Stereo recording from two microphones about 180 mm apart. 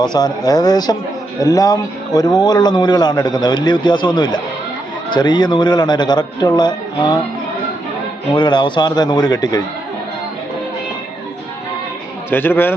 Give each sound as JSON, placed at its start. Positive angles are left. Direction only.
{"t": 0.0, "sound": "a man's voice", "side_deg": 20}
{"t": 8.3, "sound": "a man's voice", "side_deg": 25}
{"t": 12.3, "sound": "a man's voice", "side_deg": 10}